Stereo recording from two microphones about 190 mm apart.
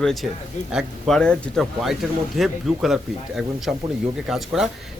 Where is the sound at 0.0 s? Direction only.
Centre (ahead or behind).